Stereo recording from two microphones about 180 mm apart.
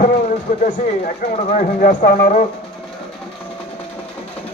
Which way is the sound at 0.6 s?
50° left (ahead or behind).